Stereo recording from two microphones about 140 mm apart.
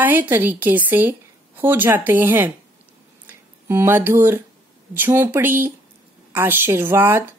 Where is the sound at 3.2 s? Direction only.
15° right (ahead or behind).